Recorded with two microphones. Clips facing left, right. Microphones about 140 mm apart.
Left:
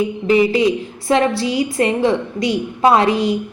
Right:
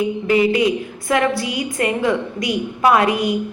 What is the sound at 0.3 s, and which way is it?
A woman's voice, 25° left (ahead or behind).